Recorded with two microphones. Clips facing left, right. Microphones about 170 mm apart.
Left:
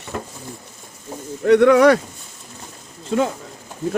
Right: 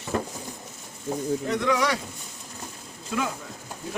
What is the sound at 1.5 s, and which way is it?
Speech, 65° left (ahead or behind).